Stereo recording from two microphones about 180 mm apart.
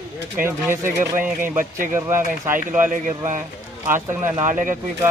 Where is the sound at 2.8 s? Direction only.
45° right (ahead or behind).